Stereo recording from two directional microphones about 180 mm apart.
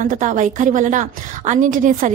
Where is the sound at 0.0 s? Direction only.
45° right (ahead or behind).